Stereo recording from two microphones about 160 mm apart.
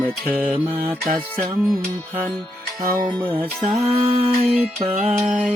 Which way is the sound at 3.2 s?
35° right (ahead or behind).